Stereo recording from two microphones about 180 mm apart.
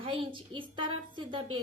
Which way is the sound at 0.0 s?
30° right (ahead or behind).